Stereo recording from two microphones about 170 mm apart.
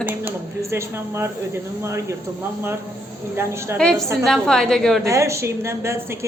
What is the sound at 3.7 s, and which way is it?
A woman's voice, 5° left (ahead or behind).